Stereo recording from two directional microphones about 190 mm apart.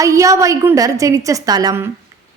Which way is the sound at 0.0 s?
15° right (ahead or behind).